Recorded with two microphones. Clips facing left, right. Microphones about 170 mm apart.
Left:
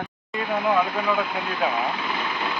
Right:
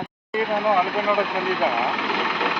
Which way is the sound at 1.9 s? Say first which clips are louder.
Right 3 dB; 90° right.